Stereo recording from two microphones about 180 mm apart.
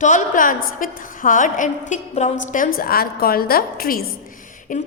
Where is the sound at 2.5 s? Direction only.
50° left (ahead or behind).